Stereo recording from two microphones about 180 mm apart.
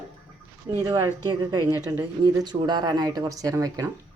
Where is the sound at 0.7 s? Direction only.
20° right (ahead or behind).